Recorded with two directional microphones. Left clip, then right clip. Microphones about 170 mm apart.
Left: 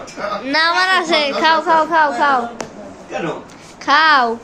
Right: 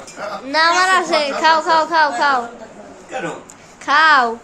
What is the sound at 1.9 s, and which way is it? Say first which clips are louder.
Speech: left 1 dB; 25° right (ahead or behind).